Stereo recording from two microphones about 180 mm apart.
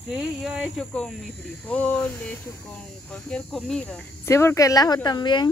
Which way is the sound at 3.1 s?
5° left (ahead or behind).